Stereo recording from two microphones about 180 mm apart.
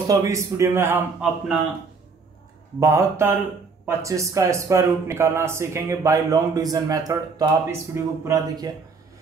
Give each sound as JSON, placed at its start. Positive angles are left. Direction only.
{"t": 0.1, "sound": "speech", "side_deg": -15}
{"t": 2.8, "sound": "speech", "side_deg": -15}